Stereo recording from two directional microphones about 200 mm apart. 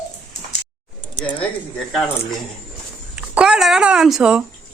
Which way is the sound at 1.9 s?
Centre (ahead or behind).